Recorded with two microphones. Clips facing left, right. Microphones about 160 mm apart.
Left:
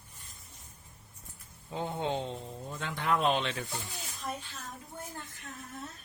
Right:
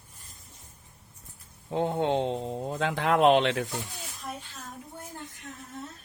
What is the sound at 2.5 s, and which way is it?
Mantra, 65° right (ahead or behind).